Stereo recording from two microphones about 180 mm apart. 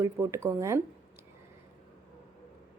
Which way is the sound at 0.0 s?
15° right (ahead or behind).